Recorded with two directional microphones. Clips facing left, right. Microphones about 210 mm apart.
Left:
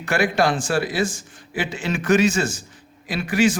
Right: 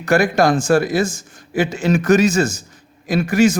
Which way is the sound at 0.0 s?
40° right (ahead or behind).